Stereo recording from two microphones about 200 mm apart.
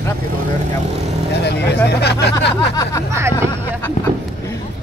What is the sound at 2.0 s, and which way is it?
Speech, 55° left (ahead or behind).